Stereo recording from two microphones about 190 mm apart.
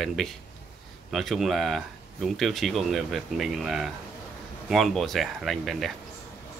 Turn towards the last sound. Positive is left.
turn(degrees=0)  # may be behind; listen again after turning